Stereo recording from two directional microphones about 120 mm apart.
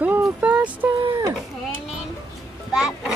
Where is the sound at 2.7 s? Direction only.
5° right (ahead or behind).